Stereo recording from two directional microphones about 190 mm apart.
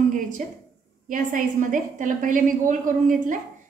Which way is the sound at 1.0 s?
45° right (ahead or behind).